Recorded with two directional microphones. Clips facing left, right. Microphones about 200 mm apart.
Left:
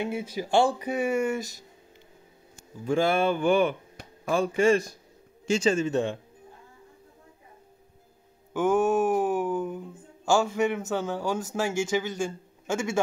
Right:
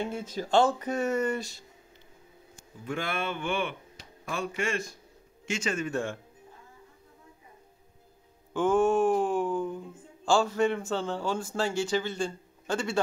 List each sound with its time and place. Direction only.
0.0 s speech: 10° left (ahead or behind)
2.8 s speech: 30° left (ahead or behind)
8.5 s a sound: 10° left (ahead or behind)
10.2 s speech: 10° left (ahead or behind)